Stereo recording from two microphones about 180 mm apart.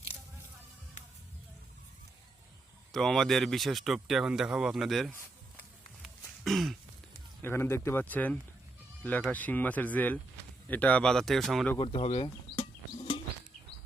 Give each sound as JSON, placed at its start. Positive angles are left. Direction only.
{"t": 2.9, "sound": "speech", "side_deg": 0}
{"t": 6.0, "sound": "throat clearing", "side_deg": 0}
{"t": 7.4, "sound": "speech", "side_deg": 15}
{"t": 11.8, "sound": "insect", "side_deg": 30}